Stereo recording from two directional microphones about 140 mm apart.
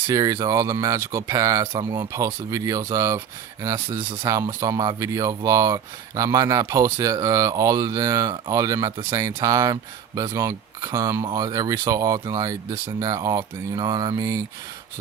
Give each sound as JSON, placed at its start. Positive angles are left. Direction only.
{"t": 0.1, "sound": "speech", "side_deg": -25}
{"t": 3.8, "sound": "speech", "side_deg": -35}
{"t": 4.3, "sound": "speech", "side_deg": -25}